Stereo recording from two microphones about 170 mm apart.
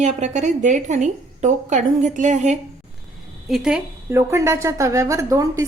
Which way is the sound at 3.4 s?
5° right (ahead or behind).